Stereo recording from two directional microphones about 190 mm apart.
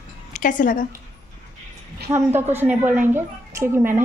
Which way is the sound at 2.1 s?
10° right (ahead or behind).